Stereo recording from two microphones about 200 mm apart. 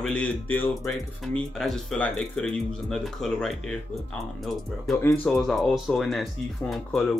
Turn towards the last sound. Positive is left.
turn(degrees=0)  # may be behind; listen again after turning